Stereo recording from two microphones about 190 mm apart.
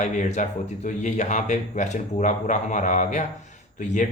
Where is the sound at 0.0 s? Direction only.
40° left (ahead or behind).